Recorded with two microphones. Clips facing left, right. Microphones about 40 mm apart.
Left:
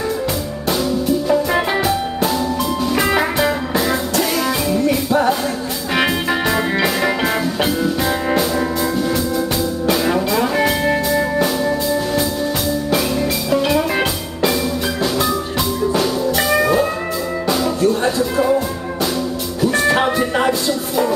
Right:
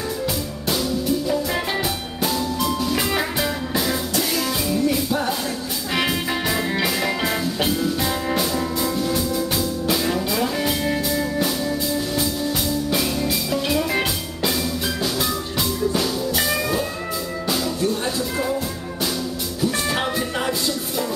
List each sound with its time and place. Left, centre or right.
1.8 s music: centre
7.6 s music: centre
10.4 s music: left
12.9 s music: centre
16.3 s music: centre
18.0 s music: centre
19.6 s music: centre
19.9 s music: left